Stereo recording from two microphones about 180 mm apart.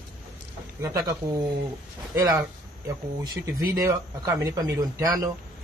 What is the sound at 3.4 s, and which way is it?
Speech, 20° right (ahead or behind).